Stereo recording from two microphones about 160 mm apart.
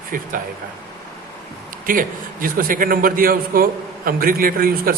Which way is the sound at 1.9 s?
60° right (ahead or behind).